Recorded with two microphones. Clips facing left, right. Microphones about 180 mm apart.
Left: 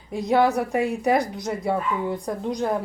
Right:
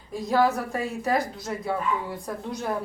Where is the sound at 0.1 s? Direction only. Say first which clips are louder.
Left 3 dB; 20° left (ahead or behind).